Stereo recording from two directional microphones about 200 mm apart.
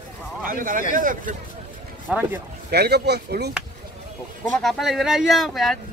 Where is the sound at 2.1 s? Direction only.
5° right (ahead or behind).